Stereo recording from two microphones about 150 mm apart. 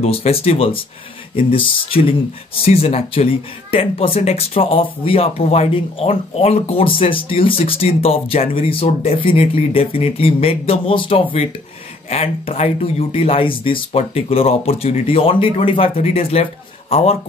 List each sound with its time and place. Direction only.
0.0 s speech: 40° left (ahead or behind)